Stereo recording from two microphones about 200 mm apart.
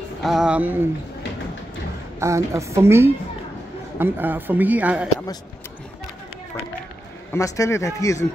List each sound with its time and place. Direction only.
0.2 s speech: centre (ahead or behind)
2.1 s speech: 15° right (ahead or behind)
7.3 s speech: 15° left (ahead or behind)